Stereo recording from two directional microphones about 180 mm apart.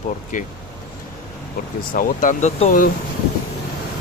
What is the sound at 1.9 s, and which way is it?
Speech, 45° left (ahead or behind).